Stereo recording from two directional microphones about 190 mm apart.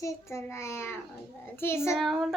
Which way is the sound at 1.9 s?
Centre (ahead or behind).